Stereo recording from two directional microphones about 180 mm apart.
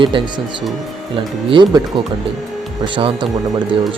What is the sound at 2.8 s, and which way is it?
Speech, 25° right (ahead or behind).